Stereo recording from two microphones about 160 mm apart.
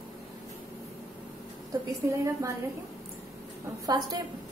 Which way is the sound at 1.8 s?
20° right (ahead or behind).